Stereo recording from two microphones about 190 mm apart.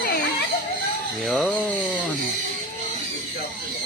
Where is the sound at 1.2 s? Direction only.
Centre (ahead or behind).